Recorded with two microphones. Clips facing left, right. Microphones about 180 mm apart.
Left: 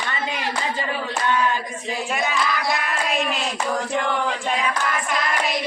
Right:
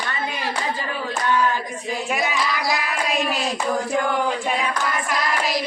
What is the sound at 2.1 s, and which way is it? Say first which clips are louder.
Child singing: left 1 dB; centre (ahead or behind).